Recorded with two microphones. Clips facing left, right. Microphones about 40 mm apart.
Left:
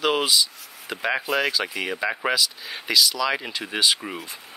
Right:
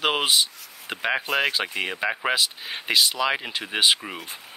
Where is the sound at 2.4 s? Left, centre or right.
Right.